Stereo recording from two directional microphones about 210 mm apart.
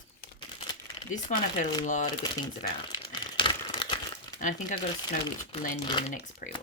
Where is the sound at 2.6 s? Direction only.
20° left (ahead or behind).